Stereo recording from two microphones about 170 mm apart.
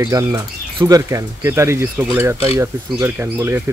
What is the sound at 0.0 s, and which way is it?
Speech, 20° right (ahead or behind).